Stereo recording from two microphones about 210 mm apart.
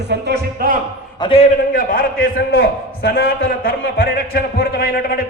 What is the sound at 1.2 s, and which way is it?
Speech, 25° left (ahead or behind).